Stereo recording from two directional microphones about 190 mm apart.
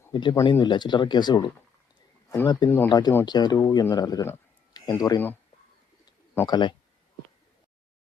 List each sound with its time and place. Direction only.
0.1 s speech: 25° left (ahead or behind)
2.6 s speech: 10° left (ahead or behind)